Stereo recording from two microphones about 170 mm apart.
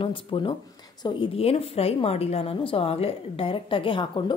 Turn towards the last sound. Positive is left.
turn(degrees=30)  # may be behind; listen again after turning